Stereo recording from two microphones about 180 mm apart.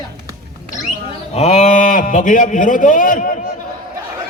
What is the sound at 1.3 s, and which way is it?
A man's voice, 40° left (ahead or behind).